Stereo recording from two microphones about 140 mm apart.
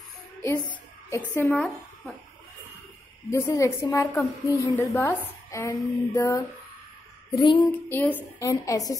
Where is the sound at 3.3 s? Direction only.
20° left (ahead or behind).